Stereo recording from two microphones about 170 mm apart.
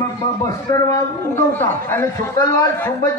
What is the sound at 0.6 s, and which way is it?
A man's voice, 20° left (ahead or behind).